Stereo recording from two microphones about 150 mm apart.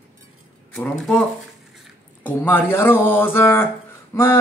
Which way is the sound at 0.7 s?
5° left (ahead or behind).